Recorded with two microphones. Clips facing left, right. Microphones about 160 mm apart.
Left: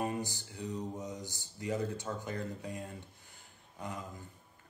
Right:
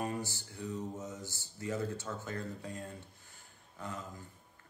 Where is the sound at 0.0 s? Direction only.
20° left (ahead or behind).